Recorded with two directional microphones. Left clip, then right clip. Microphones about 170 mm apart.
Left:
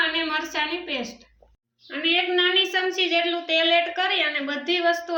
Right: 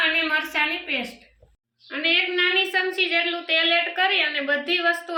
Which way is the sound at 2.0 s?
20° left (ahead or behind).